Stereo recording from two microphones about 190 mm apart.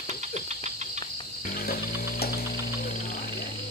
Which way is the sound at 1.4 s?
50° left (ahead or behind).